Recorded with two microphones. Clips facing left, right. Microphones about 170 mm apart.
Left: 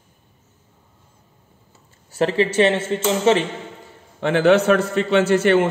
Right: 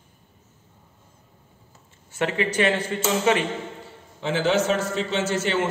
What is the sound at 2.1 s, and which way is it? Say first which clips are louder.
A man's voice: left 6 dB; 35° left (ahead or behind).